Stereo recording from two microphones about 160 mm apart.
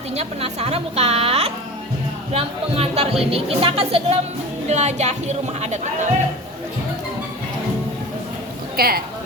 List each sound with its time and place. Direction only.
0.1 s speech: 40° right (ahead or behind)
8.7 s a woman's voice: 70° right (ahead or behind)